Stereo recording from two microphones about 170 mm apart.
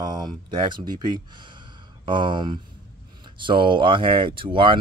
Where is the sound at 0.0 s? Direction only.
25° right (ahead or behind).